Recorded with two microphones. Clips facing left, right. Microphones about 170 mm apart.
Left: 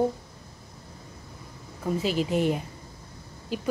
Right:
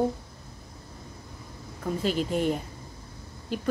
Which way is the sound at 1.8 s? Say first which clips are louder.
Left 1 dB; 5° left (ahead or behind).